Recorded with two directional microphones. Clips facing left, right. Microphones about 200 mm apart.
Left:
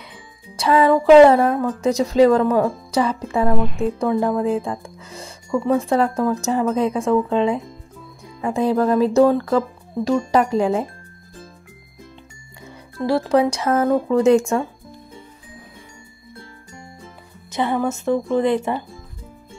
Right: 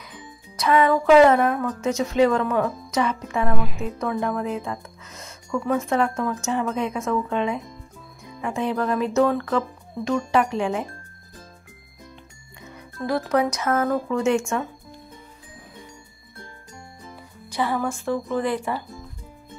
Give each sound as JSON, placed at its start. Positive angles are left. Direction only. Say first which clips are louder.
{"t": 0.6, "sound": "a woman's voice", "louder": "left 3 dB", "side_deg": 30}
{"t": 13.0, "sound": "speech", "louder": "left 5 dB", "side_deg": 30}
{"t": 17.5, "sound": "speech", "louder": "left 4 dB", "side_deg": 25}